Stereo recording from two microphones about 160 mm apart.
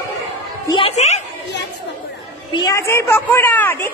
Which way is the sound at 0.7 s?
35° left (ahead or behind).